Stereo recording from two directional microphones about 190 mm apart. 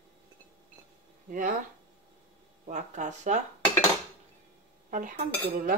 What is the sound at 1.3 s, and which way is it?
Cutlery, 45° right (ahead or behind).